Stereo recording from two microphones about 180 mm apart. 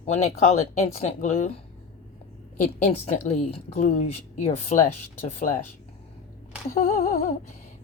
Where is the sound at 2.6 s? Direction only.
40° left (ahead or behind).